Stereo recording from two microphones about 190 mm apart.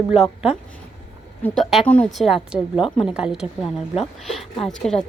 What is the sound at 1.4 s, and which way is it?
A woman's voice, 10° left (ahead or behind).